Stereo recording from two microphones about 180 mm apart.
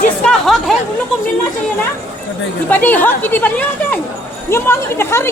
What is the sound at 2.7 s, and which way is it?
Speech, 10° left (ahead or behind).